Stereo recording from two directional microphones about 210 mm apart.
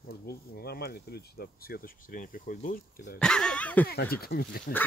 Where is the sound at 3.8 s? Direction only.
45° left (ahead or behind).